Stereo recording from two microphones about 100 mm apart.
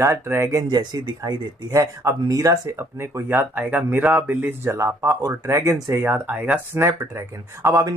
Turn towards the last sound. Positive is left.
turn(degrees=-30)  # may be behind; listen again after turning